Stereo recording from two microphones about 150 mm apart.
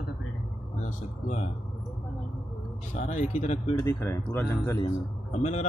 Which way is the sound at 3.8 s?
15° left (ahead or behind).